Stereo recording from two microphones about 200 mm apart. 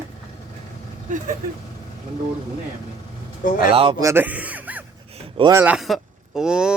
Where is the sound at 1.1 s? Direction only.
40° right (ahead or behind).